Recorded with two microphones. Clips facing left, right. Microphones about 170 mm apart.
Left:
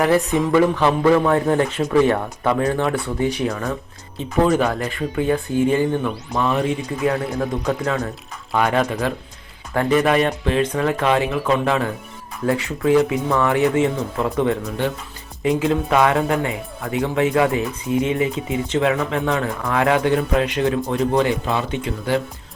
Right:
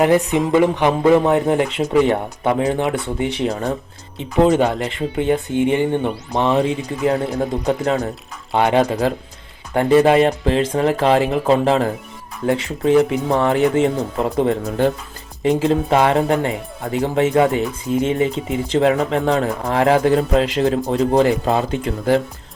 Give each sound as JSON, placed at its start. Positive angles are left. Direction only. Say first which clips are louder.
{"t": 0.0, "sound": "speech", "louder": "right 2 dB", "side_deg": -20}